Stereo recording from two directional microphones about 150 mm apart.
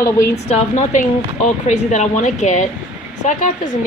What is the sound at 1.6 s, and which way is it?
A woman's voice, 55° left (ahead or behind).